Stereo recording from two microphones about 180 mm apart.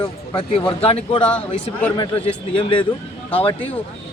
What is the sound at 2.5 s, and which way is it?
Speech, 30° left (ahead or behind).